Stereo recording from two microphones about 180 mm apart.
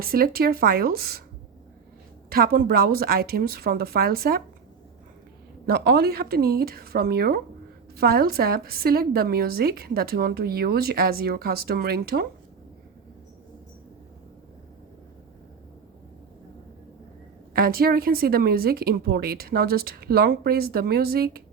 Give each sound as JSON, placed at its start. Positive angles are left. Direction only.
{"t": 0.0, "sound": "a woman's voice", "side_deg": -55}
{"t": 2.3, "sound": "a woman's voice", "side_deg": -55}
{"t": 5.6, "sound": "a woman's voice", "side_deg": -60}
{"t": 17.5, "sound": "a woman's voice", "side_deg": -55}